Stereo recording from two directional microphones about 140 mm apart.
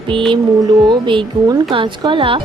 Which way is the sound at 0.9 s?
35° right (ahead or behind).